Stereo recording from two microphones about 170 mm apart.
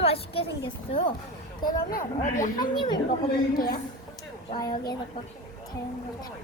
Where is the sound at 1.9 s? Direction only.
50° left (ahead or behind).